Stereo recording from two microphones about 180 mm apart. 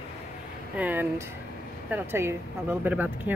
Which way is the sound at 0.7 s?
10° right (ahead or behind).